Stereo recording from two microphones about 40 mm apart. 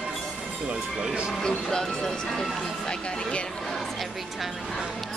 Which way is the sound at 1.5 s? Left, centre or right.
Centre.